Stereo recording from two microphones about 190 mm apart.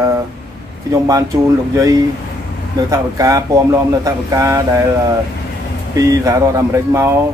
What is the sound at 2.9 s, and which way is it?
Speech, 20° right (ahead or behind).